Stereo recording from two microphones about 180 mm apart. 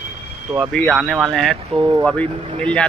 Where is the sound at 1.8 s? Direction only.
25° right (ahead or behind).